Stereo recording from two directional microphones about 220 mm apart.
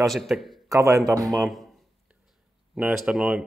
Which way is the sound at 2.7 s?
5° right (ahead or behind).